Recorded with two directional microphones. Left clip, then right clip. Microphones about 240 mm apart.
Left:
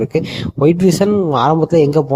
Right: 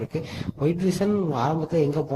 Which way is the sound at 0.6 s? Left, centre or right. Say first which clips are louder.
Left 12 dB; left.